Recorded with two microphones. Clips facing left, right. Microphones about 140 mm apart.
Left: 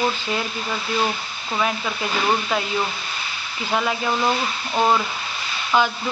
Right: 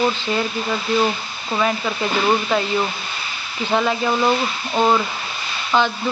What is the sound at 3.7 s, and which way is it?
Speech, 5° left (ahead or behind).